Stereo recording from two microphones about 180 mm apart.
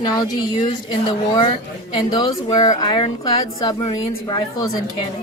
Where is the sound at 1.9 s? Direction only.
25° left (ahead or behind).